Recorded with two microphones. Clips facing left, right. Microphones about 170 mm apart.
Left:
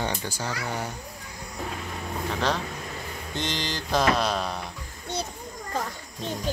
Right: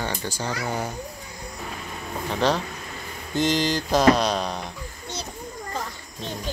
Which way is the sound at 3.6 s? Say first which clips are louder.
Right 8 dB; 45° right (ahead or behind).